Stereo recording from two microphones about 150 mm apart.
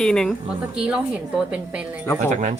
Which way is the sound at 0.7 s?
5° right (ahead or behind).